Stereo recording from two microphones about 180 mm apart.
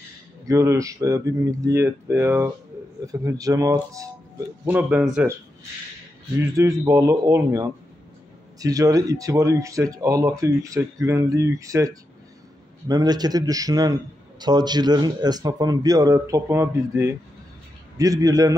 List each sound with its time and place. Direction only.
0.5 s a man's voice: 15° right (ahead or behind)
6.5 s a man's voice: 15° right (ahead or behind)